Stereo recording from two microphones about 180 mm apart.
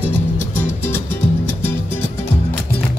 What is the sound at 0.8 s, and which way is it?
Music, 10° left (ahead or behind).